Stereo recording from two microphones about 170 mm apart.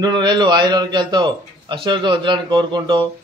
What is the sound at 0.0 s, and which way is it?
A man's voice, 25° right (ahead or behind).